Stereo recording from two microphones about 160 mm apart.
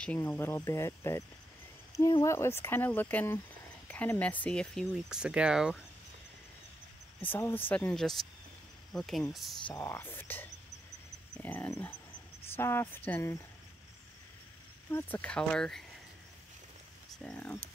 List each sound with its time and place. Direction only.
0.0 s speech: 5° left (ahead or behind)
7.2 s speech: 15° left (ahead or behind)
9.7 s speech: 15° left (ahead or behind)
14.9 s speech: 15° left (ahead or behind)
17.2 s speech: 5° left (ahead or behind)